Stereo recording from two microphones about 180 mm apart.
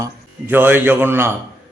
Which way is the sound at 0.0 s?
10° right (ahead or behind).